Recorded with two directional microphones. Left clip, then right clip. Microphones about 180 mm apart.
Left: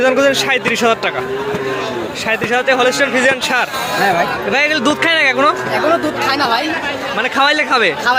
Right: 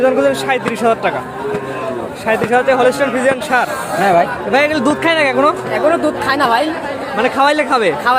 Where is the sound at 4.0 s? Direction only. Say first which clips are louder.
Right 3 dB; 55° right (ahead or behind).